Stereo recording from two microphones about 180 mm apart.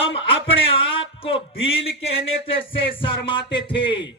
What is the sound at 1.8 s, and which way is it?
Music, 30° left (ahead or behind).